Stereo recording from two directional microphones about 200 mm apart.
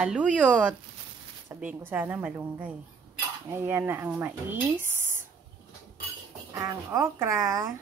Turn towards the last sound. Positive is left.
turn(degrees=-15)  # may be behind; listen again after turning